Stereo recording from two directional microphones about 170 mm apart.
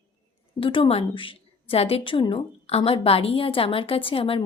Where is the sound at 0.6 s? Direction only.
30° left (ahead or behind).